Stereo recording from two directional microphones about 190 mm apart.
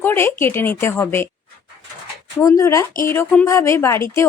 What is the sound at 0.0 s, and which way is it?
Speech, 10° left (ahead or behind).